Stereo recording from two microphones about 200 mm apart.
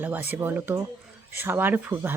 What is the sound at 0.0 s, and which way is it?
A woman's voice, 10° right (ahead or behind).